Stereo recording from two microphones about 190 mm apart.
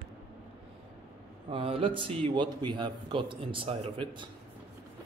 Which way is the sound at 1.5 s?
30° right (ahead or behind).